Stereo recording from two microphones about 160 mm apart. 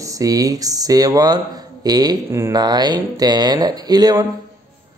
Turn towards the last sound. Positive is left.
turn(degrees=-25)  # may be behind; listen again after turning